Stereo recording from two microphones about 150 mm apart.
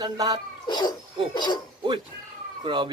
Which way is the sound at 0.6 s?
30° left (ahead or behind).